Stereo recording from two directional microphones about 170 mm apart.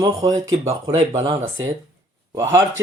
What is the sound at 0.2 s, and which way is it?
Speech, 20° right (ahead or behind).